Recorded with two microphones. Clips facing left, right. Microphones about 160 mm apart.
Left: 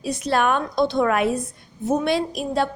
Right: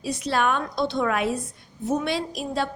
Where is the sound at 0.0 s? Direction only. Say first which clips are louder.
Left 3 dB; 50° left (ahead or behind).